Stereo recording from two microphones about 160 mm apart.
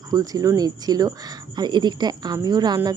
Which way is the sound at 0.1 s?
25° right (ahead or behind).